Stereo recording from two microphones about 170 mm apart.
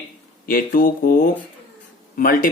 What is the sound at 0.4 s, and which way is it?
Speech, 55° left (ahead or behind).